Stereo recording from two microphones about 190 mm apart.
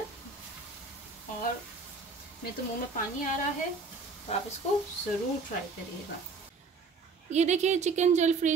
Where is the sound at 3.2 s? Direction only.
40° left (ahead or behind).